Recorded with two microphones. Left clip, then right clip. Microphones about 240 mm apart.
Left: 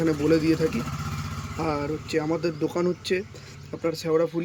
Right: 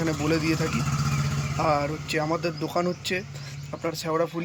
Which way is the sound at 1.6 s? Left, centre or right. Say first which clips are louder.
Right 3 dB; centre.